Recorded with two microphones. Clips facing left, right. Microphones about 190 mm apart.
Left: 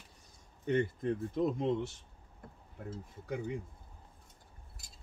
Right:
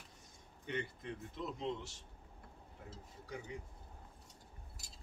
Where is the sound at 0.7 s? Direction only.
45° left (ahead or behind).